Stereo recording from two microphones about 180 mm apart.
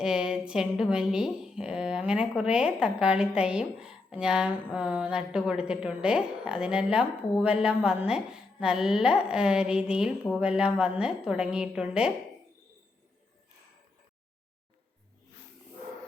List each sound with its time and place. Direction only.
0.0 s a woman's voice: 5° right (ahead or behind)